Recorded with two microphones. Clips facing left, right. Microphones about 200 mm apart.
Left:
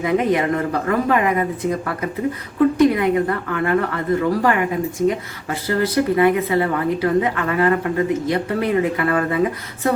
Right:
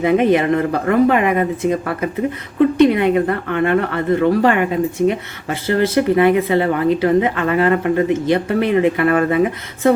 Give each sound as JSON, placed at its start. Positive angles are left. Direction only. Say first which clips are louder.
{"t": 0.0, "sound": "speech", "louder": "right 4 dB", "side_deg": -25}